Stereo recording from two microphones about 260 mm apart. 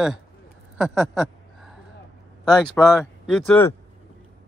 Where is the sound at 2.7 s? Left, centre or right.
Centre.